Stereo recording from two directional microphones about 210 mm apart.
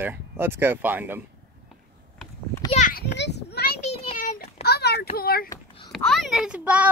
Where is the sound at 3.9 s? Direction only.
40° left (ahead or behind).